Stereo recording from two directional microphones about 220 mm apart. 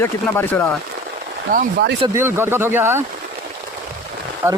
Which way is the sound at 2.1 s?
10° right (ahead or behind).